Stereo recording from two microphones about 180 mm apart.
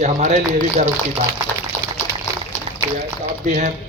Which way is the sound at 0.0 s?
40° right (ahead or behind).